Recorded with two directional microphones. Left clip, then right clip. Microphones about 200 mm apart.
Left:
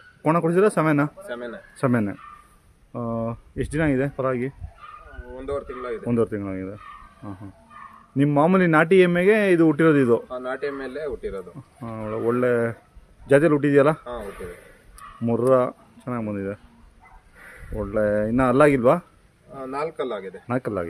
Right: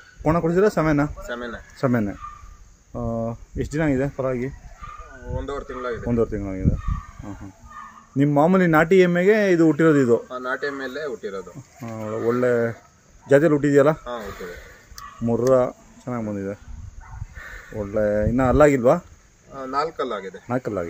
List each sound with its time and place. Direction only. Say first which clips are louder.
0.2 s speech: even; 5° left (ahead or behind)
1.2 s speech: right 2 dB; 25° left (ahead or behind)
1.8 s a man's voice: even; 5° left (ahead or behind)
5.3 s speech: even; 40° left (ahead or behind)
6.0 s speech: even; 10° left (ahead or behind)
8.2 s a man's voice: right 1 dB; centre (ahead or behind)
10.2 s speech: right 2 dB; 20° left (ahead or behind)
11.8 s a man's voice: right 1 dB; 5° left (ahead or behind)
15.2 s speech: right 1 dB; centre (ahead or behind)
17.7 s speech: right 1 dB; 10° left (ahead or behind)
20.4 s a man's voice: even; 5° left (ahead or behind)